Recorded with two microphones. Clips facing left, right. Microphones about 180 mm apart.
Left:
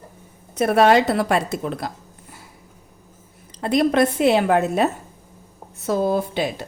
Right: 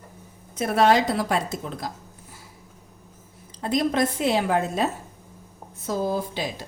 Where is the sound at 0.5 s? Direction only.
65° left (ahead or behind).